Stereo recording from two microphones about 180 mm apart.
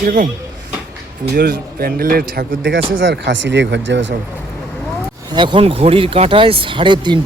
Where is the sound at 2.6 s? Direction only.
90° right.